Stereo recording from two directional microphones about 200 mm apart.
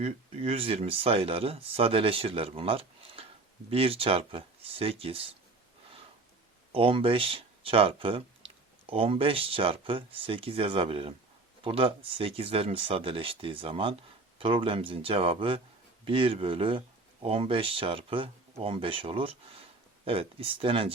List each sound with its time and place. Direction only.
0.0 s speech: 30° right (ahead or behind)
6.7 s speech: 25° right (ahead or behind)